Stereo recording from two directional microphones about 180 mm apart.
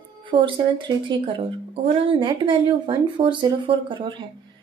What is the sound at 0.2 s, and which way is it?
Speech, 25° right (ahead or behind).